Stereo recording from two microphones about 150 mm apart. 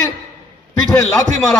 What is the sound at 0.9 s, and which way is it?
Speech, 10° left (ahead or behind).